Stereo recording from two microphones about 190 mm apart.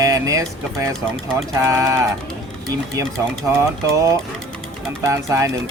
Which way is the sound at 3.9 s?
15° right (ahead or behind).